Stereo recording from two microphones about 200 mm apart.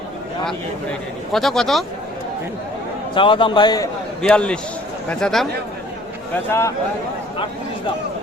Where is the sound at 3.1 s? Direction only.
25° left (ahead or behind).